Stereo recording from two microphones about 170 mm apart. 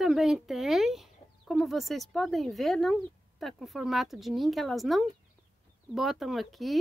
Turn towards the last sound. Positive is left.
turn(degrees=0)  # may be behind; listen again after turning